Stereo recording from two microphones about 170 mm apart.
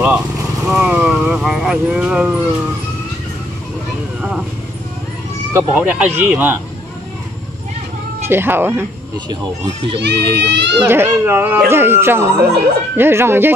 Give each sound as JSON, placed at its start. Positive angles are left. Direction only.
{"t": 0.7, "sound": "speech", "side_deg": -5}
{"t": 4.2, "sound": "speech", "side_deg": 0}
{"t": 5.5, "sound": "speech", "side_deg": -10}
{"t": 8.3, "sound": "speech", "side_deg": -15}
{"t": 9.9, "sound": "a child's voice", "side_deg": -85}
{"t": 10.9, "sound": "speech", "side_deg": -15}